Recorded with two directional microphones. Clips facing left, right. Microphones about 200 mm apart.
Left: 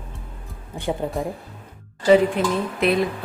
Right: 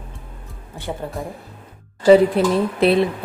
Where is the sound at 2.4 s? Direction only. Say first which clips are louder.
Right 5 dB; 35° right (ahead or behind).